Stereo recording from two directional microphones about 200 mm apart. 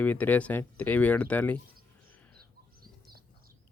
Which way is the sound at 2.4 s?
50° right (ahead or behind).